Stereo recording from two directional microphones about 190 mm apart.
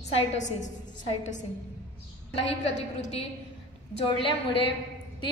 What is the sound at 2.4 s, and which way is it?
Speech, 35° left (ahead or behind).